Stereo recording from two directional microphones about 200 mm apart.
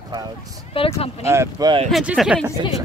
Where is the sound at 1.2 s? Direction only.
15° right (ahead or behind).